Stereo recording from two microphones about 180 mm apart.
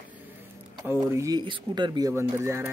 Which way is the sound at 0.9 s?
15° right (ahead or behind).